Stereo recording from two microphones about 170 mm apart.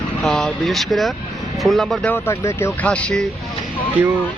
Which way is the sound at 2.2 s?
15° left (ahead or behind).